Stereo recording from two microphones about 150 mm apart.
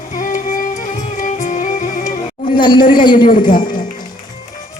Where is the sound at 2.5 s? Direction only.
30° left (ahead or behind).